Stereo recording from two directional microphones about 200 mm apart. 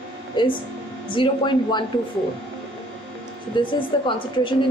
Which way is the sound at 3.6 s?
25° left (ahead or behind).